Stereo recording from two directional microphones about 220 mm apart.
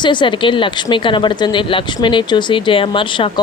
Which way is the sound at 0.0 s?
20° left (ahead or behind).